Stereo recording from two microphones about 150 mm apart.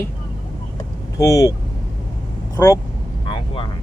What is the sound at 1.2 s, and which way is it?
Speech, 20° left (ahead or behind).